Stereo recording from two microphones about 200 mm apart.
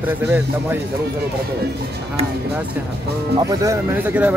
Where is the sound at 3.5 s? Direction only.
15° right (ahead or behind).